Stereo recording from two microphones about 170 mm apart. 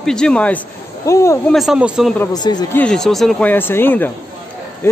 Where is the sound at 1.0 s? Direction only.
20° left (ahead or behind).